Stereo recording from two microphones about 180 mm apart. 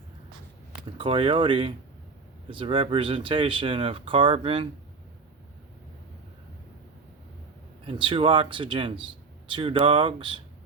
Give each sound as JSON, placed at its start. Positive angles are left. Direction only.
{"t": 0.9, "sound": "speech", "side_deg": -30}
{"t": 7.9, "sound": "speech", "side_deg": -30}